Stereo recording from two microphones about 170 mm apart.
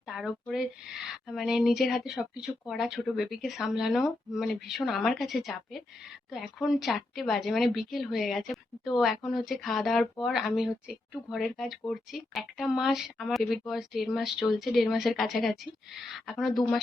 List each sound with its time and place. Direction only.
0.1 s speech: centre (ahead or behind)